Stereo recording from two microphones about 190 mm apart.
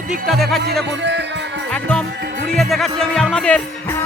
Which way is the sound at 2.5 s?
Centre (ahead or behind).